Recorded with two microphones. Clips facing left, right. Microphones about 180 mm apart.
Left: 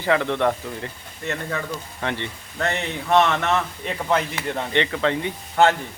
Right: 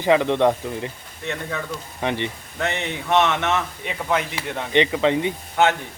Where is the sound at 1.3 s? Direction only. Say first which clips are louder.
Left 1 dB; centre (ahead or behind).